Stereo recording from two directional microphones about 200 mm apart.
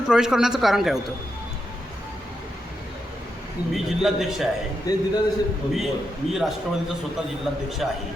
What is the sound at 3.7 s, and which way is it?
Speech, centre (ahead or behind).